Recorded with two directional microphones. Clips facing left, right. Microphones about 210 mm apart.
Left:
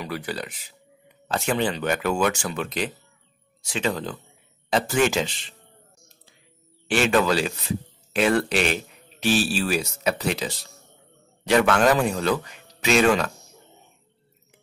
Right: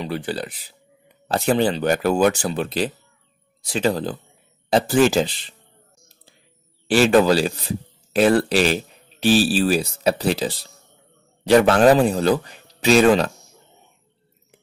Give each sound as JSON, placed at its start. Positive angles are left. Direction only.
{"t": 0.0, "sound": "speech", "side_deg": -30}
{"t": 6.9, "sound": "speech", "side_deg": -35}